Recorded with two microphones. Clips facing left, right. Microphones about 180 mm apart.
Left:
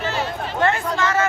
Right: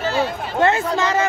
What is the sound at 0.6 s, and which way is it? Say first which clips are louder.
Speech: right 3 dB; 20° right (ahead or behind).